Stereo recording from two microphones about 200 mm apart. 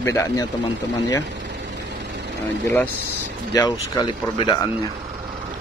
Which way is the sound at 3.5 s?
20° left (ahead or behind).